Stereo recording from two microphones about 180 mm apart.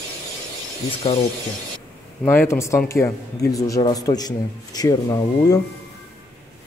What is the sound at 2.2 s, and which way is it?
Speech, 15° left (ahead or behind).